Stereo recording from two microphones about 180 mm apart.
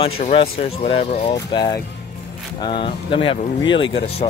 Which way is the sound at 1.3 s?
25° left (ahead or behind).